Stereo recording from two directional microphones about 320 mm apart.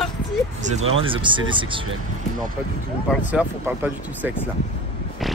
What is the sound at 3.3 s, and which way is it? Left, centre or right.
Speech, centre.